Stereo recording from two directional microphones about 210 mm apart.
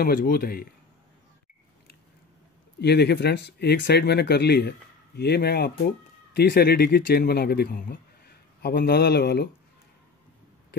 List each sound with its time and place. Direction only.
0.0 s speech: 45° left (ahead or behind)
2.8 s speech: 50° left (ahead or behind)